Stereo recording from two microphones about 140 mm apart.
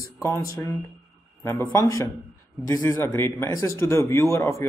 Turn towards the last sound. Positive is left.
turn(degrees=20)  # may be behind; listen again after turning